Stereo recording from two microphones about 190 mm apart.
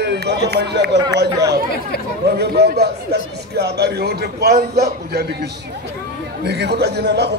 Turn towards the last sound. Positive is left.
turn(degrees=-60)  # may be behind; listen again after turning